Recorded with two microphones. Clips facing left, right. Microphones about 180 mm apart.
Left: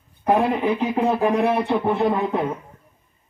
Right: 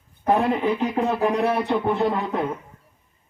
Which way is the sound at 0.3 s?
10° left (ahead or behind).